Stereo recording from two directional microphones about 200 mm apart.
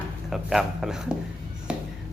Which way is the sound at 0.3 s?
Centre (ahead or behind).